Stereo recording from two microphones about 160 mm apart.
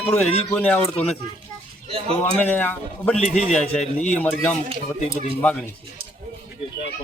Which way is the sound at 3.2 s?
45° left (ahead or behind).